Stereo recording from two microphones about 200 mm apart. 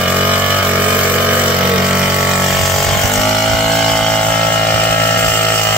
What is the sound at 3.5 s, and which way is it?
Pump, centre (ahead or behind).